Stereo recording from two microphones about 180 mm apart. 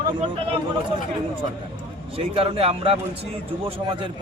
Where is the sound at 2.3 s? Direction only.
30° right (ahead or behind).